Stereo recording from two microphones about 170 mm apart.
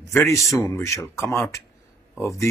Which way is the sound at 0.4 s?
Centre (ahead or behind).